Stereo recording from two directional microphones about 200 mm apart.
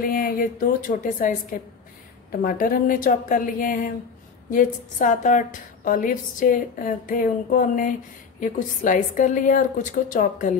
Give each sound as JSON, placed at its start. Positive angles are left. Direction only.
{"t": 0.0, "sound": "a woman's voice", "side_deg": 45}
{"t": 4.9, "sound": "a woman's voice", "side_deg": 40}